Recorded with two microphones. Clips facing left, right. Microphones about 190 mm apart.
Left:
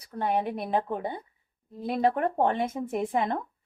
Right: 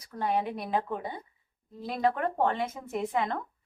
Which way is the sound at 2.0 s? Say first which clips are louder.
Left 2 dB; 25° left (ahead or behind).